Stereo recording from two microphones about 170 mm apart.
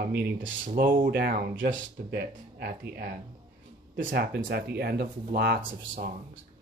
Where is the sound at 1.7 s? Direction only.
75° right (ahead or behind).